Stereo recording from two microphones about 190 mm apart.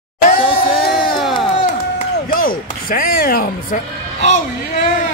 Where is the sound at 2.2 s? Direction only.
50° left (ahead or behind).